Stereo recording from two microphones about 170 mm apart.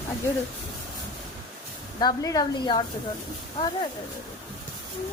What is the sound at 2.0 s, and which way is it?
Speech, 25° left (ahead or behind).